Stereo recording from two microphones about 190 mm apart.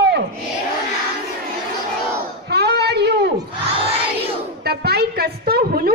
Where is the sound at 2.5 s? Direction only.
60° right (ahead or behind).